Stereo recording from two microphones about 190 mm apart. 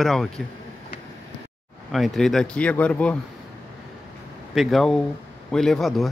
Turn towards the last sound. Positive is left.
turn(degrees=0)  # may be behind; listen again after turning